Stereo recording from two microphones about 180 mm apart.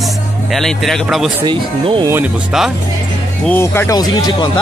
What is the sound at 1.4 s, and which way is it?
Speech, 30° right (ahead or behind).